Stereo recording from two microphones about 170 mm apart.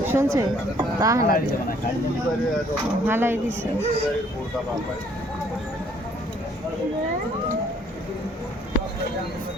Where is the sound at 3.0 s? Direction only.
15° right (ahead or behind).